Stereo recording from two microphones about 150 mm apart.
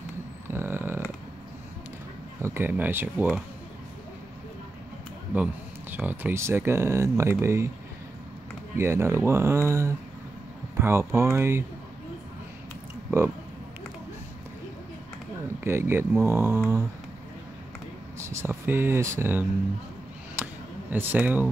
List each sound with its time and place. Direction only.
0.5 s a sound: 15° right (ahead or behind)
2.4 s speech: 15° right (ahead or behind)
5.3 s speech: 10° right (ahead or behind)
8.7 s speech: 15° right (ahead or behind)
13.1 s speech: 15° right (ahead or behind)
15.6 s speech: 15° right (ahead or behind)
18.2 s speech: 15° right (ahead or behind)
20.4 s a sound: 10° right (ahead or behind)
20.9 s speech: 10° right (ahead or behind)